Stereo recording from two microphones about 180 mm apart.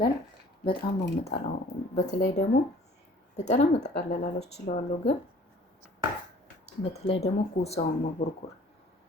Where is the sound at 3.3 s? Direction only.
40° left (ahead or behind).